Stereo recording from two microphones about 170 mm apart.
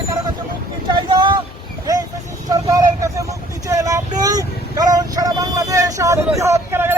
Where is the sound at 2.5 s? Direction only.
20° right (ahead or behind).